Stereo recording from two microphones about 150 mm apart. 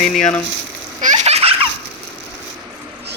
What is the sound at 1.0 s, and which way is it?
Baby laughter, 50° right (ahead or behind).